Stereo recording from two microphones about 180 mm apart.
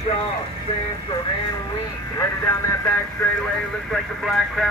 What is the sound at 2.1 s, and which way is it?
Speech, 15° left (ahead or behind).